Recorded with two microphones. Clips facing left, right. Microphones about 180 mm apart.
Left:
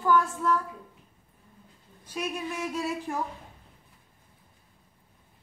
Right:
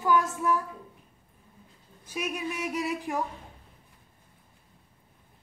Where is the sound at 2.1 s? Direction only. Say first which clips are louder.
Even; 15° right (ahead or behind).